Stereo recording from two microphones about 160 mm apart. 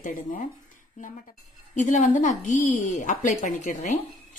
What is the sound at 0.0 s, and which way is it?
Speech, 55° left (ahead or behind).